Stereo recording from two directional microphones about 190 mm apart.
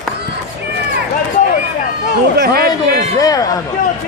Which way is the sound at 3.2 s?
20° left (ahead or behind).